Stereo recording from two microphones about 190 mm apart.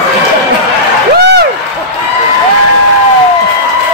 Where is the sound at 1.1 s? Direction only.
60° right (ahead or behind).